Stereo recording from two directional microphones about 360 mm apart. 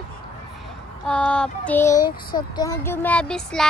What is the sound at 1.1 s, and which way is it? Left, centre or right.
Speech, centre.